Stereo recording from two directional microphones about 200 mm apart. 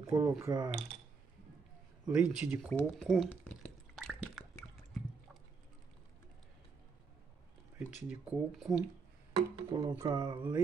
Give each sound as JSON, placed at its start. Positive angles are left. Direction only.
{"t": 0.1, "sound": "mechanisms", "side_deg": -15}
{"t": 2.0, "sound": "speech", "side_deg": -5}
{"t": 2.7, "sound": "drip", "side_deg": 0}
{"t": 7.8, "sound": "speech", "side_deg": -5}
{"t": 9.3, "sound": "speech", "side_deg": -25}